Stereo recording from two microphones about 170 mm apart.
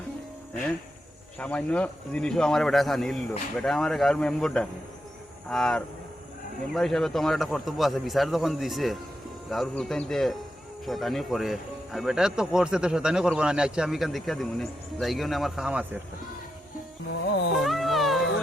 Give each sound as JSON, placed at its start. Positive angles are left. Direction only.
{"t": 1.4, "sound": "speech", "side_deg": 10}
{"t": 17.1, "sound": "speech", "side_deg": 90}
{"t": 17.6, "sound": "cat", "side_deg": 0}